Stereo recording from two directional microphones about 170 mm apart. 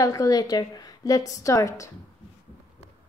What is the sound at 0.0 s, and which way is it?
A woman's voice, 20° left (ahead or behind).